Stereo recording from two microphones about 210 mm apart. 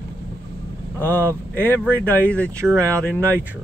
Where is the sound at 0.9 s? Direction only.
10° left (ahead or behind).